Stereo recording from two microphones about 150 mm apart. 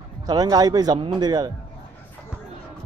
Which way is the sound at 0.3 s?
25° right (ahead or behind).